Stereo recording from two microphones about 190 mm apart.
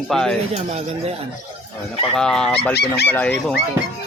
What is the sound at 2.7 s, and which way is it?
Speech, 60° left (ahead or behind).